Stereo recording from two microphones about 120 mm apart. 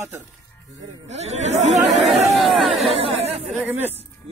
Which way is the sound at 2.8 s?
55° right (ahead or behind).